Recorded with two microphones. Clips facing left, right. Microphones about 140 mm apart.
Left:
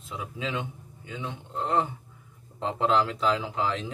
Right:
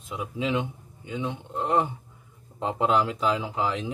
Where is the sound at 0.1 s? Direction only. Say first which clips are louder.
Right 5 dB; 15° right (ahead or behind).